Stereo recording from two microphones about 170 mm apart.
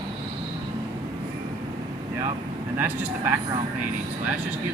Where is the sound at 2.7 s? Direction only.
10° right (ahead or behind).